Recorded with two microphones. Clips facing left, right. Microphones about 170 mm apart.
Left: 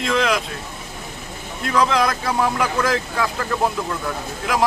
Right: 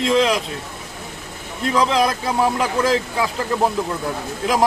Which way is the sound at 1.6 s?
25° right (ahead or behind).